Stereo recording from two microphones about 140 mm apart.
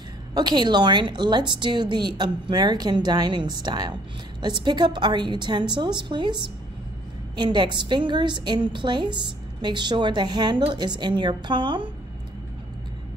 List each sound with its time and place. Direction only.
0.3 s a woman's voice: 30° right (ahead or behind)